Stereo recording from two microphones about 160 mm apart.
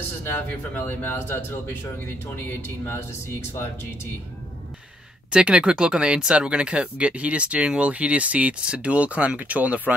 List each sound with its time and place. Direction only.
0.2 s a man's voice: 10° left (ahead or behind)
2.9 s a man's voice: 15° left (ahead or behind)
5.3 s speech: 5° right (ahead or behind)